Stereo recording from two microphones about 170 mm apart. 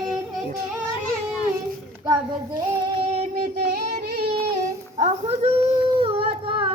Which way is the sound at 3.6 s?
75° right (ahead or behind).